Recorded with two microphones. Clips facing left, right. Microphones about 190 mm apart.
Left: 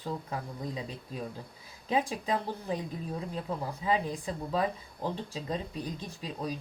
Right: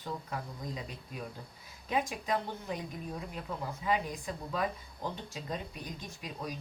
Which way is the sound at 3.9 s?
30° left (ahead or behind).